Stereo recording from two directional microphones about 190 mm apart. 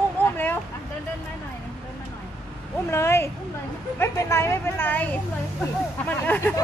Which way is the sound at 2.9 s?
15° left (ahead or behind).